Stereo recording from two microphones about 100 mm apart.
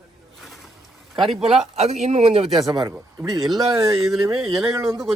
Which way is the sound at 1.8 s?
90° right.